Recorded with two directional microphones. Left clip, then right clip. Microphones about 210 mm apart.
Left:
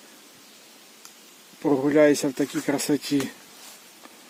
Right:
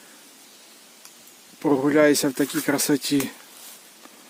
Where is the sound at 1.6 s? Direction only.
15° right (ahead or behind).